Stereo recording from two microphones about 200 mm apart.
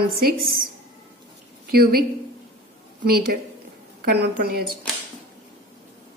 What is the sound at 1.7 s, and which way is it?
Speech, 50° right (ahead or behind).